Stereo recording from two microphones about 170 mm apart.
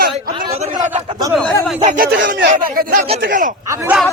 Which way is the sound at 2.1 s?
90° right.